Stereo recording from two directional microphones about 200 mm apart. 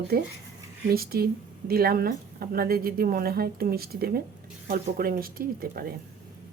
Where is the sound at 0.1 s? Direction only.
50° right (ahead or behind).